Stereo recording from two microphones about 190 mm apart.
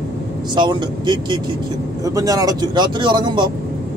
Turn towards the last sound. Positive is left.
turn(degrees=-25)  # may be behind; listen again after turning